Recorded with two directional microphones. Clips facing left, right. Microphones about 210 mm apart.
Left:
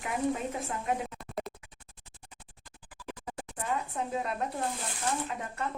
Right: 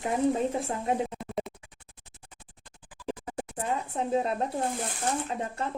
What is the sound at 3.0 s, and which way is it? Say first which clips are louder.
Scratch: right 7 dB; 30° right (ahead or behind).